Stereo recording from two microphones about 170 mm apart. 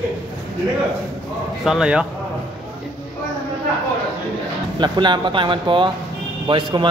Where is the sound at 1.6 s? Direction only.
5° right (ahead or behind).